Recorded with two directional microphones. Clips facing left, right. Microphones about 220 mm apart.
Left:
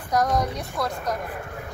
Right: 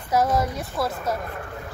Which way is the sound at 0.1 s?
5° right (ahead or behind).